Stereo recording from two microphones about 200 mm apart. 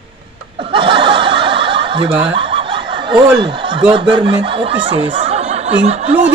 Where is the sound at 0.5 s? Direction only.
25° right (ahead or behind).